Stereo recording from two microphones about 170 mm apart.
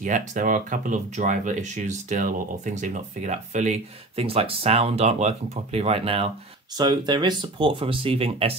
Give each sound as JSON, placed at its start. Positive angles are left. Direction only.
{"t": 0.0, "sound": "speech", "side_deg": -50}